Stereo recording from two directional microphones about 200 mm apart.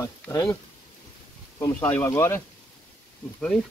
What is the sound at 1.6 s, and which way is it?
Speech, 10° left (ahead or behind).